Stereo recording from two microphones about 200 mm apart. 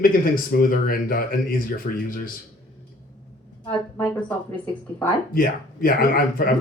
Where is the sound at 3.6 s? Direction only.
5° left (ahead or behind).